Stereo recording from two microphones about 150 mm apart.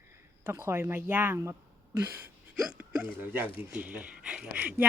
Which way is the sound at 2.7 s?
5° right (ahead or behind).